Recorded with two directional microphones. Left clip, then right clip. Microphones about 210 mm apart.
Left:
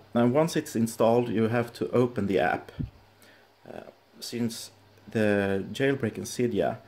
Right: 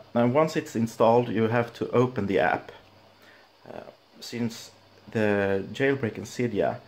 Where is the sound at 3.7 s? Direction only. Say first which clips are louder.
Right 2 dB; 15° left (ahead or behind).